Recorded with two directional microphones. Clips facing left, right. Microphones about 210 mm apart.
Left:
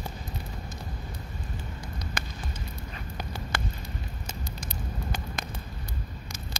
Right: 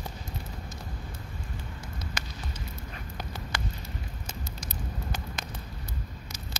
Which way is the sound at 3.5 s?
55° left (ahead or behind).